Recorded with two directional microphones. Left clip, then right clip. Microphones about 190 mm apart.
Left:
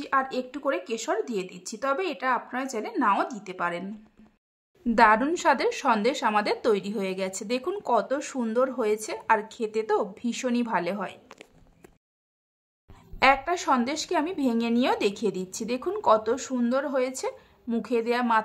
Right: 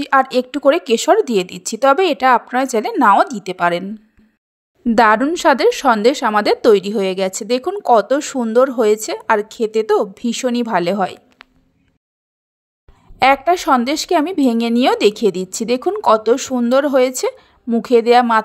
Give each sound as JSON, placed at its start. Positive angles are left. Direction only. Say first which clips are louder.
{"t": 0.0, "sound": "speech", "louder": "right 12 dB", "side_deg": -40}
{"t": 4.8, "sound": "speech", "louder": "right 8 dB", "side_deg": -35}
{"t": 13.2, "sound": "speech", "louder": "right 9 dB", "side_deg": -35}